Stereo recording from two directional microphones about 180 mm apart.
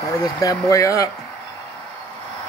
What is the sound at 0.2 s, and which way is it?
Speech, 20° left (ahead or behind).